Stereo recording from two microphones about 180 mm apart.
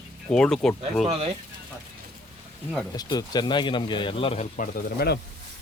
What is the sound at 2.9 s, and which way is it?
Speech, 20° left (ahead or behind).